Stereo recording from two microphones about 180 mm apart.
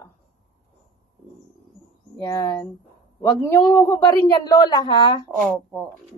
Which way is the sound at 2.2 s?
20° left (ahead or behind).